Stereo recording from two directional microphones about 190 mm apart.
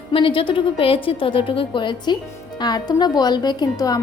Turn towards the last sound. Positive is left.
turn(degrees=20)  # may be behind; listen again after turning